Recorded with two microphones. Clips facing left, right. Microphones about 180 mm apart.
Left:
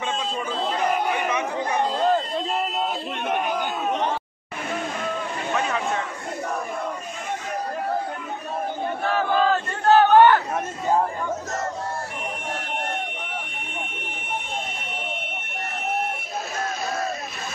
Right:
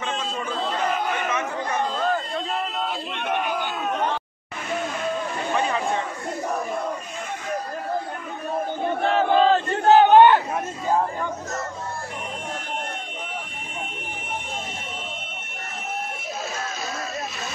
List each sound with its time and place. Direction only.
0.7 s chatter: 10° left (ahead or behind)
3.3 s crowd: 10° left (ahead or behind)
5.5 s vehicle: centre (ahead or behind)
9.0 s battle cry: 25° right (ahead or behind)